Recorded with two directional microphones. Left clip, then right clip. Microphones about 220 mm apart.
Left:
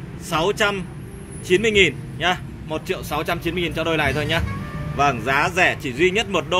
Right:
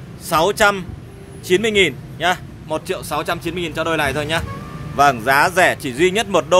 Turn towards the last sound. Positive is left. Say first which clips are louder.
# right 5 dB
turn(degrees=-15)  # may be behind; listen again after turning